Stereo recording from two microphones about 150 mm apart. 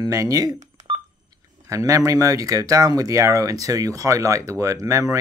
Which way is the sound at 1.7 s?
20° right (ahead or behind).